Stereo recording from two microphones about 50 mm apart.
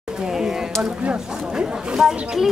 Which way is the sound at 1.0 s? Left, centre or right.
Centre.